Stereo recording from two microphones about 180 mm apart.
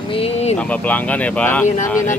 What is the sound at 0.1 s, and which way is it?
Speech, 35° left (ahead or behind).